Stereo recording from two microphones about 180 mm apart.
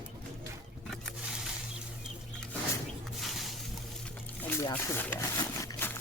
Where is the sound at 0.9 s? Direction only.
Centre (ahead or behind).